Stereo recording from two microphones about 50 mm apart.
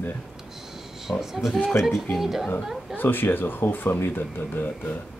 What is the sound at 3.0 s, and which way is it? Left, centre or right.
Speech, left.